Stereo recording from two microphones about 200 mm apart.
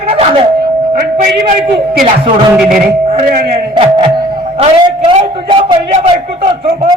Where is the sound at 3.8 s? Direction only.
25° right (ahead or behind).